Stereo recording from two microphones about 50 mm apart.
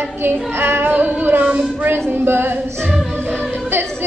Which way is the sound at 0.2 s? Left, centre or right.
Right.